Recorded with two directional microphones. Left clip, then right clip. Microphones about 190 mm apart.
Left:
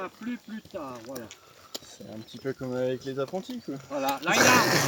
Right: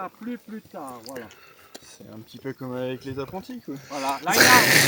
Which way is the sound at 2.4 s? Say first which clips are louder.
Left 1 dB; 20° right (ahead or behind).